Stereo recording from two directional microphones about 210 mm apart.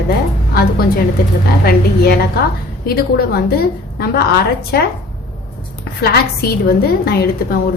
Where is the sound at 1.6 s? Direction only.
45° left (ahead or behind).